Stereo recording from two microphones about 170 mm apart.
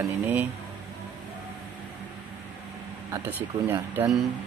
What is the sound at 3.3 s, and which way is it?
Speech, 10° right (ahead or behind).